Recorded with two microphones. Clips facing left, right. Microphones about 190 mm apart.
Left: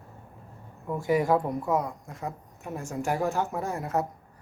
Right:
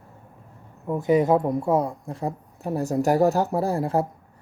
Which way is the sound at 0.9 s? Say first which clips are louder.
Right 5 dB; 20° right (ahead or behind).